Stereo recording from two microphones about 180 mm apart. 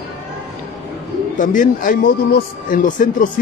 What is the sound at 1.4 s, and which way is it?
Speech, 45° left (ahead or behind).